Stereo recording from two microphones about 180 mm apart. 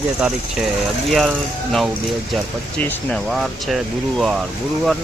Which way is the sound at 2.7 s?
5° left (ahead or behind).